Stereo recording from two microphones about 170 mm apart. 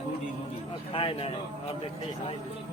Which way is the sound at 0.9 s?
30° left (ahead or behind).